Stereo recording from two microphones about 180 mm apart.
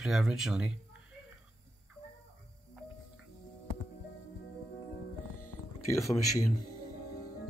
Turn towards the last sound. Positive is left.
turn(degrees=20)  # may be behind; listen again after turning